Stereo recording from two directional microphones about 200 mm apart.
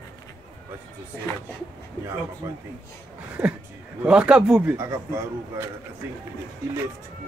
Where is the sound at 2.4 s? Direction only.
15° right (ahead or behind).